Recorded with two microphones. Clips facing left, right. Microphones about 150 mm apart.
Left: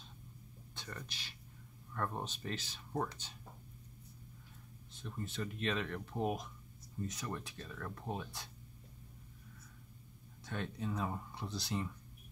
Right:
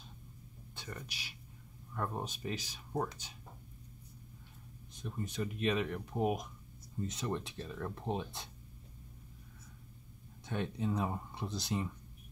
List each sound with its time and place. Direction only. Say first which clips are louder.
0.7 s speech: right 2 dB; 10° right (ahead or behind)
4.9 s speech: right 3 dB; 15° right (ahead or behind)
10.4 s speech: right 4 dB; 20° right (ahead or behind)